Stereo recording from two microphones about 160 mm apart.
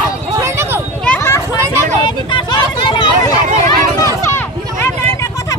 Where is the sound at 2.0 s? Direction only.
30° left (ahead or behind).